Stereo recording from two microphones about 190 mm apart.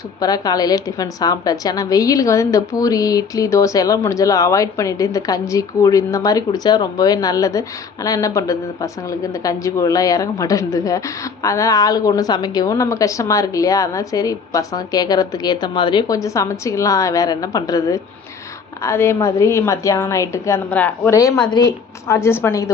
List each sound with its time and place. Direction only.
0.2 s speech: 20° left (ahead or behind)